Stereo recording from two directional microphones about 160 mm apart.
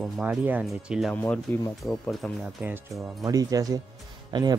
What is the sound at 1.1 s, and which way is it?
Speech, 10° left (ahead or behind).